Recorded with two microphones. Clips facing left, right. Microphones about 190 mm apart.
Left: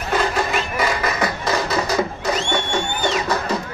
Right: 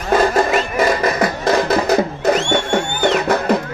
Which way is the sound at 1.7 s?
55° right (ahead or behind).